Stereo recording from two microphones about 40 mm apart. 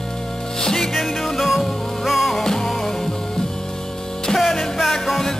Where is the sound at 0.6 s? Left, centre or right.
Centre.